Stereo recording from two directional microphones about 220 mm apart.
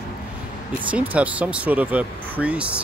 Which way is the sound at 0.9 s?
5° right (ahead or behind).